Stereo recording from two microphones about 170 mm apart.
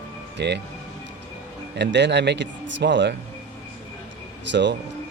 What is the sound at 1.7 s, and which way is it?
Speech, 90° right.